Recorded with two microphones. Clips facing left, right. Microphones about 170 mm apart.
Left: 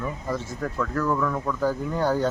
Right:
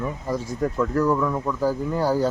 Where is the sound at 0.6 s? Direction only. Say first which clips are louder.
Right 5 dB; 20° right (ahead or behind).